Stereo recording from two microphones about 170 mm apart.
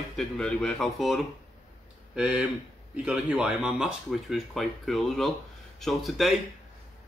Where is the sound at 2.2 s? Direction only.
5° right (ahead or behind).